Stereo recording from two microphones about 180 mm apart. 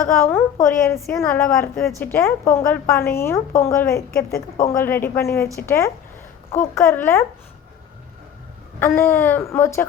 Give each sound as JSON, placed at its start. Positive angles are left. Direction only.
{"t": 0.0, "sound": "a woman's voice", "side_deg": 15}
{"t": 4.4, "sound": "a woman's voice", "side_deg": 50}
{"t": 4.7, "sound": "a woman's voice", "side_deg": 10}
{"t": 8.8, "sound": "a woman's voice", "side_deg": 15}